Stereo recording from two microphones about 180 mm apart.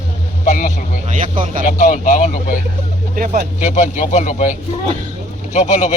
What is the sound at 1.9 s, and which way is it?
Speech, 45° left (ahead or behind).